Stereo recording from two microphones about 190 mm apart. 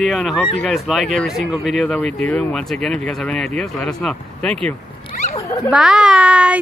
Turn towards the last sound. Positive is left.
turn(degrees=-5)  # may be behind; listen again after turning